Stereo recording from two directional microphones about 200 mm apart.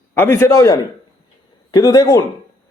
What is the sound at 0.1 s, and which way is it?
A man's voice, 10° left (ahead or behind).